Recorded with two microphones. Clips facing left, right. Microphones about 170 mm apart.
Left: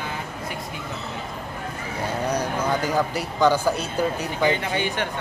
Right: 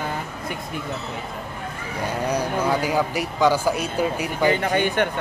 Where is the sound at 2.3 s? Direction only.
10° right (ahead or behind).